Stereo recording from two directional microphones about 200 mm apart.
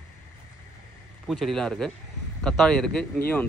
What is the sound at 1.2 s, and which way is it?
Speech, centre (ahead or behind).